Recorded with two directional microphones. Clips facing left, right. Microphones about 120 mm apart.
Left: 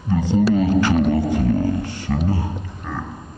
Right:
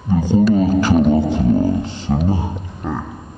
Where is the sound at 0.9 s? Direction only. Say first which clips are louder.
Right 4 dB; 20° right (ahead or behind).